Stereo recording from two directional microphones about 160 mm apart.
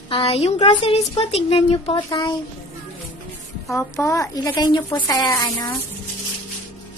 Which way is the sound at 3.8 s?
15° left (ahead or behind).